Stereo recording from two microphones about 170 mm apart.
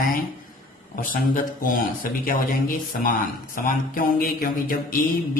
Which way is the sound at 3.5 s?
55° left (ahead or behind).